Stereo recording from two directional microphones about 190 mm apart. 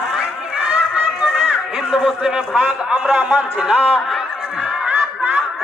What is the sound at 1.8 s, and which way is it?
A man's voice, 5° right (ahead or behind).